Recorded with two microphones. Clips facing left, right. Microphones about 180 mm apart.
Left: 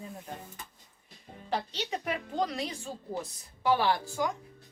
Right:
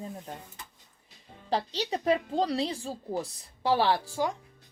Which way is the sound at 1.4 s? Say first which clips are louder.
Right 4 dB; 35° right (ahead or behind).